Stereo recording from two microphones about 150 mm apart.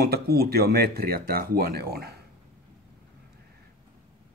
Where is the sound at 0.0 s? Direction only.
90° right.